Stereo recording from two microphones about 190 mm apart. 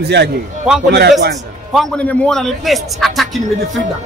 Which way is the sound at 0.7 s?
Centre (ahead or behind).